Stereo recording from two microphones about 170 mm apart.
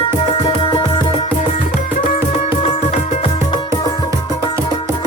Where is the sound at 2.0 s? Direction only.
35° left (ahead or behind).